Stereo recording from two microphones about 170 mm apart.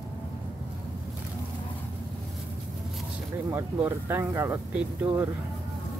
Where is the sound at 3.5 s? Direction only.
15° right (ahead or behind).